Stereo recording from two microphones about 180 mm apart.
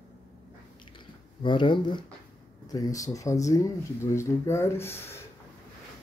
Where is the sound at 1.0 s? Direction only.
25° left (ahead or behind).